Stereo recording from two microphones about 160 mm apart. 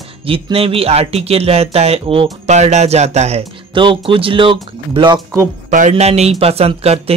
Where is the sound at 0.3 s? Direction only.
35° right (ahead or behind).